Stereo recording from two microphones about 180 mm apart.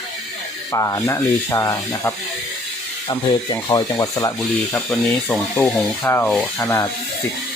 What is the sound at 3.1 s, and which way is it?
Speech, 25° left (ahead or behind).